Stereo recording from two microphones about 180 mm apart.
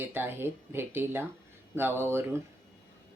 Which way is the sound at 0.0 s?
10° right (ahead or behind).